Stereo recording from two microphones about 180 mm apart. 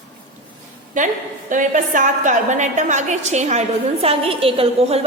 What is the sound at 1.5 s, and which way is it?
A woman's voice, 45° right (ahead or behind).